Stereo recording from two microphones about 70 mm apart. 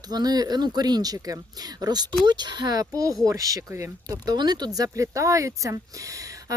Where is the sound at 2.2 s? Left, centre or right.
Right.